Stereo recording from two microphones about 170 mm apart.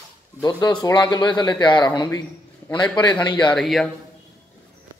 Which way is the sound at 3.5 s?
Centre (ahead or behind).